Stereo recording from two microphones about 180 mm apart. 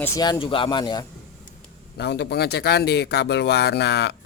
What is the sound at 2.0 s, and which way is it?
Speech, 70° left (ahead or behind).